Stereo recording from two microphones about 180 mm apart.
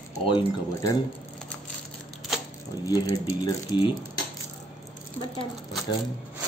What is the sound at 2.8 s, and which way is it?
Speech, 20° left (ahead or behind).